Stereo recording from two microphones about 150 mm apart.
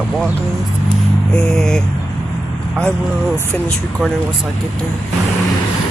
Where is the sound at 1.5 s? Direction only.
5° left (ahead or behind).